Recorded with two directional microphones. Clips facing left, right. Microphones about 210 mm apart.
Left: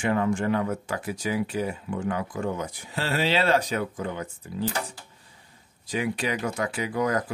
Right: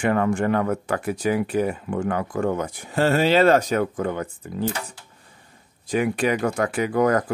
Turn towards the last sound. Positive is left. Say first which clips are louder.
# right 6 dB
turn(degrees=-55)  # may be behind; listen again after turning